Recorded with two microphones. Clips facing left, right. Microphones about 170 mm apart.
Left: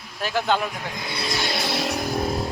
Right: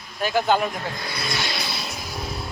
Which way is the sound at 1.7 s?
80° left.